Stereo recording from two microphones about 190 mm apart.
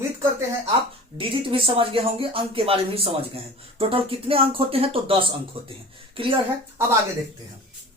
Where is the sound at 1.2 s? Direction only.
25° right (ahead or behind).